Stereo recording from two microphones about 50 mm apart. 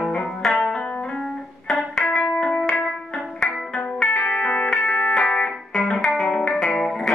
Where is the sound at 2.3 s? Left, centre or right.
Centre.